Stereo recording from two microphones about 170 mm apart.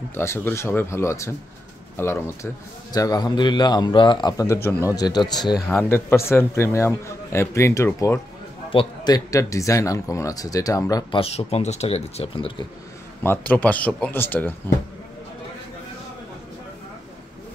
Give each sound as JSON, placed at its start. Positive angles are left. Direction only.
{"t": 0.1, "sound": "a man's voice", "side_deg": 15}
{"t": 5.0, "sound": "a man's voice", "side_deg": 25}
{"t": 5.7, "sound": "speech", "side_deg": 15}
{"t": 8.6, "sound": "a man's voice", "side_deg": 25}
{"t": 11.1, "sound": "speech", "side_deg": 35}
{"t": 13.2, "sound": "speech", "side_deg": 10}